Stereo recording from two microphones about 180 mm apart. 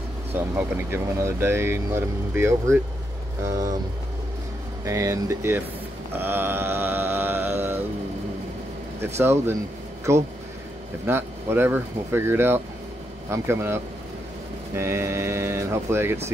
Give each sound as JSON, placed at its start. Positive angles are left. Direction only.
{"t": 0.3, "sound": "speech", "side_deg": -10}
{"t": 4.8, "sound": "speech", "side_deg": -15}
{"t": 6.1, "sound": "mantra", "side_deg": -10}
{"t": 9.0, "sound": "speech", "side_deg": -15}
{"t": 14.8, "sound": "speech", "side_deg": -15}